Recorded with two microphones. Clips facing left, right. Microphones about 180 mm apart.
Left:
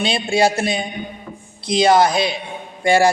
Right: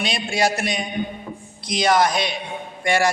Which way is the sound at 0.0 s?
30° left (ahead or behind).